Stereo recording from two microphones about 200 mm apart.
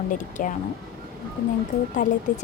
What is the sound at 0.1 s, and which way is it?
Speech, 40° left (ahead or behind).